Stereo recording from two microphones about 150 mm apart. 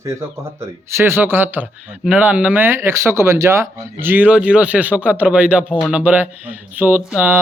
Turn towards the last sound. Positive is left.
turn(degrees=-10)  # may be behind; listen again after turning